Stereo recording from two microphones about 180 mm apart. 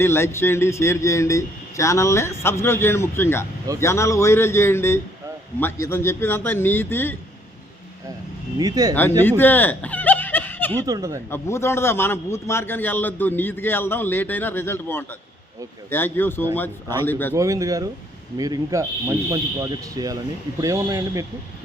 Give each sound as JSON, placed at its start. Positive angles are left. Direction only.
{"t": 0.0, "sound": "a man's voice", "side_deg": 15}
{"t": 8.5, "sound": "speech", "side_deg": -20}
{"t": 9.4, "sound": "snicker", "side_deg": 10}
{"t": 10.8, "sound": "speech", "side_deg": -20}
{"t": 11.3, "sound": "a man's voice", "side_deg": 15}
{"t": 17.3, "sound": "speech", "side_deg": -20}